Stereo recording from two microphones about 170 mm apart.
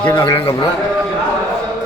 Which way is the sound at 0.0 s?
25° left (ahead or behind).